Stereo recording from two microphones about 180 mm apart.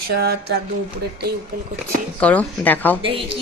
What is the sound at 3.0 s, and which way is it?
Speech, 30° right (ahead or behind).